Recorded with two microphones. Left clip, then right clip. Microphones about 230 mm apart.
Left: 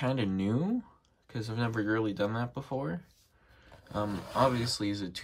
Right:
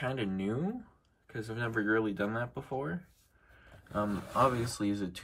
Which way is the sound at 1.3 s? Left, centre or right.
Left.